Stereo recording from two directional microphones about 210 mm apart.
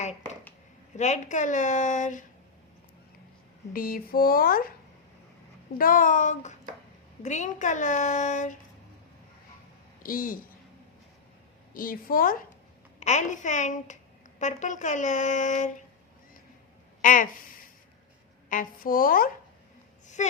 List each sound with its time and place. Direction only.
0.9 s a woman's voice: 35° left (ahead or behind)
3.7 s speech: 45° left (ahead or behind)
5.7 s a woman's voice: 40° left (ahead or behind)
10.0 s a woman's voice: 40° left (ahead or behind)
11.7 s a woman's voice: 40° left (ahead or behind)
17.0 s a woman's voice: 40° left (ahead or behind)